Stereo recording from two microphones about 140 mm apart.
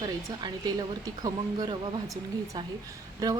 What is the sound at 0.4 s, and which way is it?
Speech, 30° right (ahead or behind).